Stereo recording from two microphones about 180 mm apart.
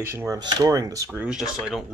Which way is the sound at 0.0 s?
15° right (ahead or behind).